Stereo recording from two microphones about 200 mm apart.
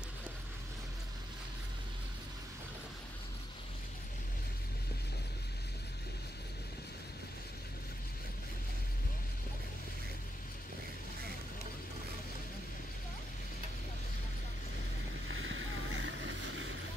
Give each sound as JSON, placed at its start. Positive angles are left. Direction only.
{"t": 15.2, "sound": "boat", "side_deg": -70}